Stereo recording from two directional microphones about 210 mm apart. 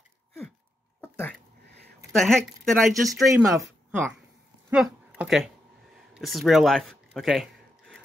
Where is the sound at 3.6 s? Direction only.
10° right (ahead or behind).